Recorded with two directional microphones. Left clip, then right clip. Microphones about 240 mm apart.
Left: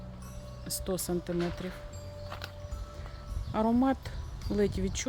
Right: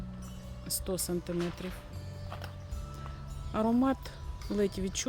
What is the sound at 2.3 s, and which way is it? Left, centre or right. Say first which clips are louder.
Music: left 2 dB; centre.